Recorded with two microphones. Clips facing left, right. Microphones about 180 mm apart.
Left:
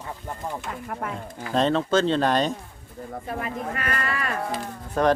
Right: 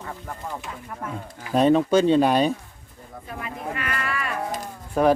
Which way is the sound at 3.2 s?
45° left (ahead or behind).